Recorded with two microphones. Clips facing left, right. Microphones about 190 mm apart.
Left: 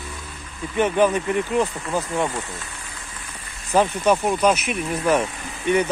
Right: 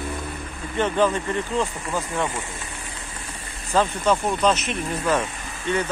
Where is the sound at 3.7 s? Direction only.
15° left (ahead or behind).